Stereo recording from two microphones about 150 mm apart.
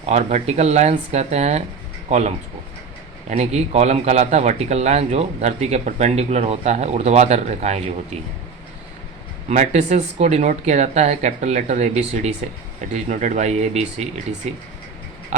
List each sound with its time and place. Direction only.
0.0 s speech: 55° right (ahead or behind)
9.5 s speech: 50° right (ahead or behind)
15.3 s a sound: 55° right (ahead or behind)